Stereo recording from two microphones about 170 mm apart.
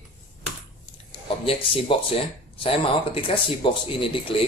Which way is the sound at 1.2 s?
30° left (ahead or behind).